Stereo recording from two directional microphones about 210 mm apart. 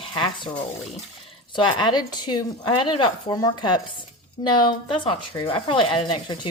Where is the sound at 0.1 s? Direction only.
20° left (ahead or behind).